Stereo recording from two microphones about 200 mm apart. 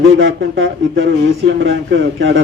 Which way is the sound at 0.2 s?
70° right (ahead or behind).